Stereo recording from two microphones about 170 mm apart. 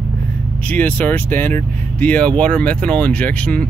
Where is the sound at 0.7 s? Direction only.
10° left (ahead or behind).